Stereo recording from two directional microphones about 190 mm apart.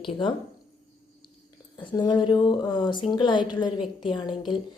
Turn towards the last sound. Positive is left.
turn(degrees=25)  # may be behind; listen again after turning